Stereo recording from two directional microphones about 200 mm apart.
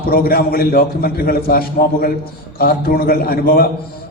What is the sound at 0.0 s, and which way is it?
A man's voice, 50° left (ahead or behind).